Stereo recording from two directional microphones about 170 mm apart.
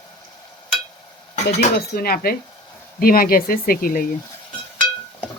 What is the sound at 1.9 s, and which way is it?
Speech, 60° left (ahead or behind).